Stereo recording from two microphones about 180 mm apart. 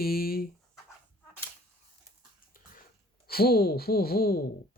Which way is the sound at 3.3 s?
60° left (ahead or behind).